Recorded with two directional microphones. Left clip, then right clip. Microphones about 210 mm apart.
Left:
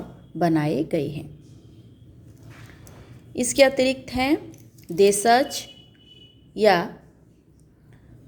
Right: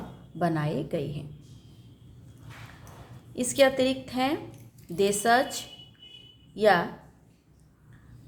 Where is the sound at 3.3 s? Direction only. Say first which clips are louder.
Left 4 dB; 25° left (ahead or behind).